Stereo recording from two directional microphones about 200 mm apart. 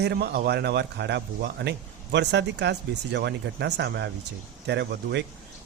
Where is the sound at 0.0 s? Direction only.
55° right (ahead or behind).